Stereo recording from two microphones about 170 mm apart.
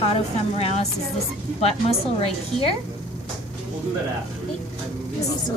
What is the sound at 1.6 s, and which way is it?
Speech, 35° left (ahead or behind).